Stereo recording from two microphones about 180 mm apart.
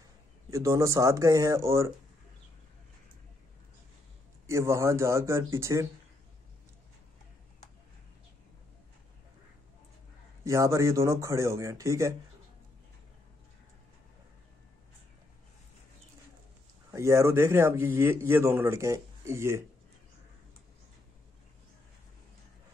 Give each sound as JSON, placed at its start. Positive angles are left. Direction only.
{"t": 0.5, "sound": "speech", "side_deg": -15}
{"t": 4.5, "sound": "speech", "side_deg": -15}
{"t": 10.4, "sound": "speech", "side_deg": -15}
{"t": 16.9, "sound": "speech", "side_deg": -15}